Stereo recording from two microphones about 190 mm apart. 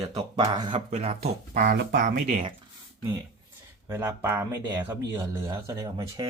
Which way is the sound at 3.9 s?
15° right (ahead or behind).